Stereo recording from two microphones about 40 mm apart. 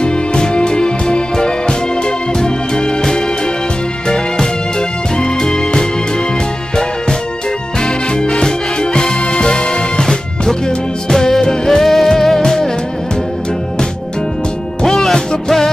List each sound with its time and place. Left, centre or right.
0.0 s music: left
5.2 s music: centre
7.8 s music: centre
14.9 s music: centre